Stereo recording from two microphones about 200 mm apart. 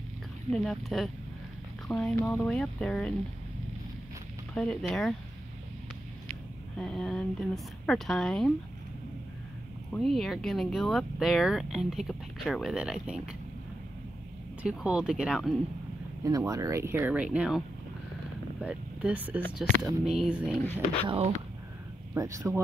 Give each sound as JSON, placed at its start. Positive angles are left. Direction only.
{"t": 0.5, "sound": "speech", "side_deg": 0}
{"t": 4.6, "sound": "speech", "side_deg": 5}
{"t": 6.8, "sound": "speech", "side_deg": 5}
{"t": 9.9, "sound": "speech", "side_deg": 0}
{"t": 14.6, "sound": "speech", "side_deg": -5}
{"t": 16.3, "sound": "speech", "side_deg": -15}
{"t": 21.0, "sound": "speech", "side_deg": -25}
{"t": 22.1, "sound": "speech", "side_deg": -15}